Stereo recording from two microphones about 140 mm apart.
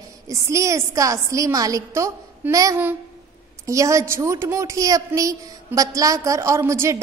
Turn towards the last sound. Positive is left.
turn(degrees=-20)  # may be behind; listen again after turning